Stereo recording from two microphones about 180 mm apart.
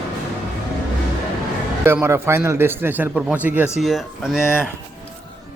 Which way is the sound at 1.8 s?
15° right (ahead or behind).